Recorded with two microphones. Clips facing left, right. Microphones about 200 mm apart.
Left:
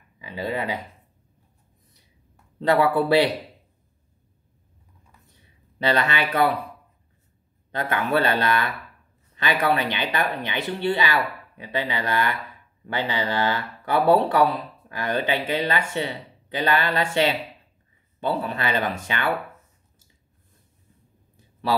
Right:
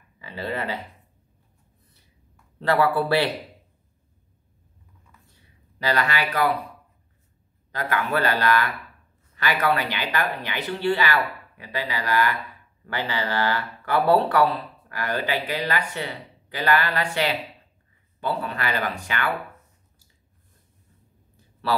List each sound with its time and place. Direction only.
0.2 s speech: 15° left (ahead or behind)
2.6 s speech: 20° left (ahead or behind)
5.8 s speech: 25° left (ahead or behind)
7.7 s speech: 25° left (ahead or behind)